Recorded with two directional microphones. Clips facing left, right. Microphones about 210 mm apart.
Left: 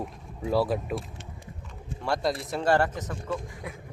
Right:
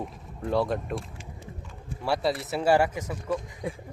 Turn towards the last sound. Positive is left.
turn(degrees=-30)  # may be behind; listen again after turning